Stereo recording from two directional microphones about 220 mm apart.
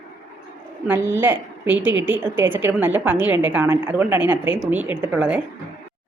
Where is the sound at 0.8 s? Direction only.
10° right (ahead or behind).